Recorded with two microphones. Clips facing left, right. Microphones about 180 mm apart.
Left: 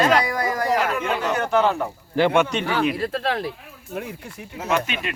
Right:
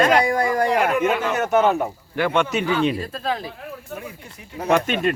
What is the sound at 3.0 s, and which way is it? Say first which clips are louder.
Speech: left 2 dB; 75° left (ahead or behind).